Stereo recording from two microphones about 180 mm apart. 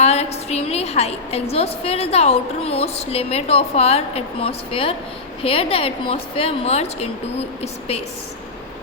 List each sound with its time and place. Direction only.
0.0 s a woman's voice: 35° left (ahead or behind)